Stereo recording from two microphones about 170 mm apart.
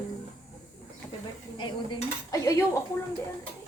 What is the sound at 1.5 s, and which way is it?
Cutlery, 30° left (ahead or behind).